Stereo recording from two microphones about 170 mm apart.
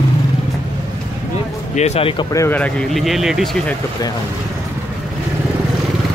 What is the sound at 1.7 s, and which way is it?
Speech, 40° left (ahead or behind).